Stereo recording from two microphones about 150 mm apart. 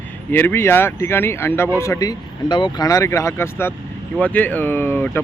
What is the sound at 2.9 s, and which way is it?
Speech, 20° left (ahead or behind).